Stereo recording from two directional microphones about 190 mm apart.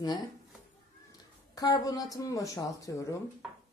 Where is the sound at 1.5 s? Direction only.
20° left (ahead or behind).